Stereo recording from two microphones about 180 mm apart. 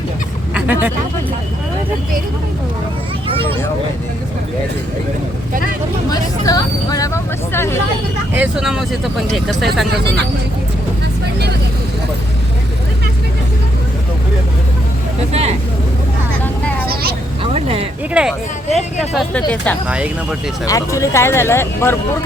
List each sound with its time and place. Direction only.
0.5 s vehicle: 10° right (ahead or behind)
6.1 s speech: 20° left (ahead or behind)
8.4 s speech: 5° right (ahead or behind)
15.3 s speech: 35° right (ahead or behind)
16.8 s vehicle: 55° right (ahead or behind)
17.4 s a sound: 35° right (ahead or behind)
18.1 s speech: 5° right (ahead or behind)
20.7 s speech: 20° left (ahead or behind)